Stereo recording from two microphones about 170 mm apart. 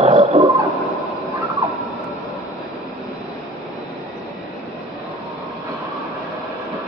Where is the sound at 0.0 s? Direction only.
35° right (ahead or behind).